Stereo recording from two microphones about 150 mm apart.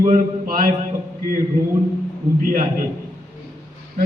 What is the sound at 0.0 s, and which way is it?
Speech, 65° right (ahead or behind).